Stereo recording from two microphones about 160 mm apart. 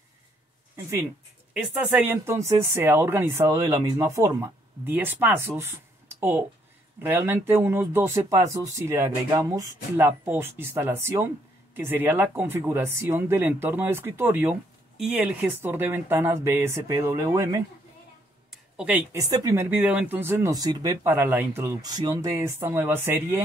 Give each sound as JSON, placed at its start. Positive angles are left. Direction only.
{"t": 1.5, "sound": "speech", "side_deg": -10}
{"t": 18.5, "sound": "a sound", "side_deg": -5}
{"t": 19.1, "sound": "speech", "side_deg": -20}